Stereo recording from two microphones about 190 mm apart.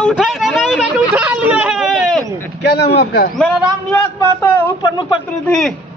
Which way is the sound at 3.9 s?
15° left (ahead or behind).